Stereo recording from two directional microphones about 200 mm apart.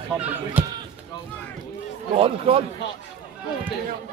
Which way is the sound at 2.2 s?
25° right (ahead or behind).